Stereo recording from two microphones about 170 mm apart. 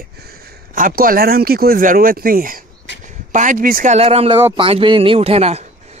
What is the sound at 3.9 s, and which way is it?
Speech, 35° right (ahead or behind).